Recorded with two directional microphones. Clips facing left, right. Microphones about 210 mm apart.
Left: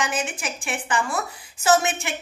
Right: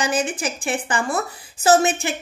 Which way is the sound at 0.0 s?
35° right (ahead or behind).